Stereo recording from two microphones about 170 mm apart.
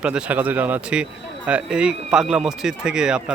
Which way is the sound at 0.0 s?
5° right (ahead or behind).